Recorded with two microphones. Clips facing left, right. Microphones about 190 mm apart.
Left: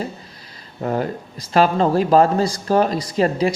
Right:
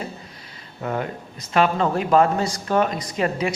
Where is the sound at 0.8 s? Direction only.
35° left (ahead or behind).